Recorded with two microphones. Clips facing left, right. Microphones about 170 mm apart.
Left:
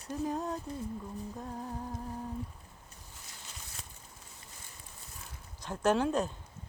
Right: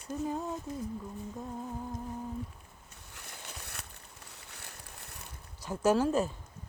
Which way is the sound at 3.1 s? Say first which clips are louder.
Right 6 dB; 60° right (ahead or behind).